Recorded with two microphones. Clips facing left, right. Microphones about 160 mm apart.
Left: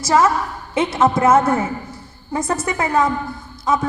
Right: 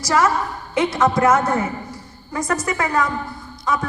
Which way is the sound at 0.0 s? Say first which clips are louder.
Left 2 dB; 25° left (ahead or behind).